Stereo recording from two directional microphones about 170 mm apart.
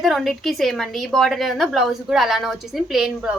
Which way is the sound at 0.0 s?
Centre (ahead or behind).